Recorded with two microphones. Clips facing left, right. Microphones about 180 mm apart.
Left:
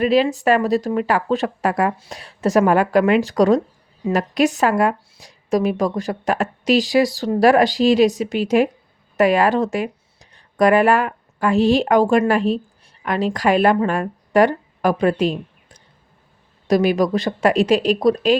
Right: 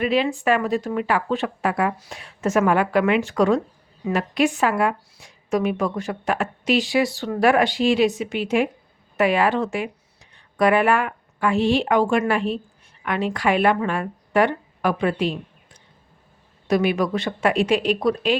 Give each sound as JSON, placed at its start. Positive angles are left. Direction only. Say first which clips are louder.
{"t": 0.0, "sound": "a woman's voice", "louder": "left 4 dB", "side_deg": 40}